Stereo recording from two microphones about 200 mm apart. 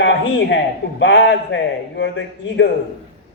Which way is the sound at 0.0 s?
65° left (ahead or behind).